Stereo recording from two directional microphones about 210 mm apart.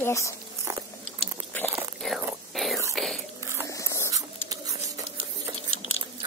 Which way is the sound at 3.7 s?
15° left (ahead or behind).